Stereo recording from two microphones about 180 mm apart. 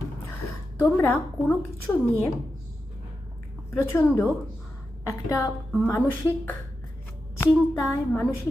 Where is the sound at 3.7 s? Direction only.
10° left (ahead or behind).